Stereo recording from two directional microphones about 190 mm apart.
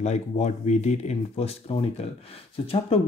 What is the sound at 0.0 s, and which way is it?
Speech, 35° left (ahead or behind).